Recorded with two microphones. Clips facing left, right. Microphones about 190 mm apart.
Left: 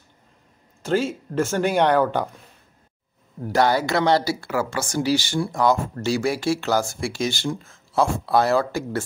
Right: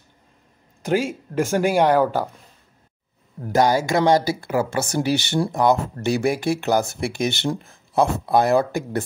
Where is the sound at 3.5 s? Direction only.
15° right (ahead or behind).